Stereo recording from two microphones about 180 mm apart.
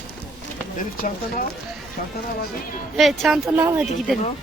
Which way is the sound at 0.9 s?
50° left (ahead or behind).